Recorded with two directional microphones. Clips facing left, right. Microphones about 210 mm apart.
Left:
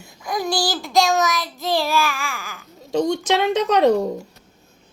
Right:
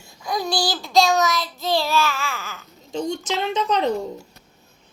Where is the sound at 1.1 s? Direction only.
15° left (ahead or behind).